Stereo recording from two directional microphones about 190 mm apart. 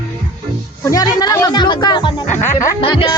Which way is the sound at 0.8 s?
15° left (ahead or behind).